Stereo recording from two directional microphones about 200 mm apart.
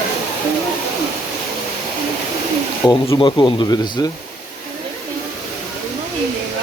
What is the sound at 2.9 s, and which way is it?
Speech, 20° left (ahead or behind).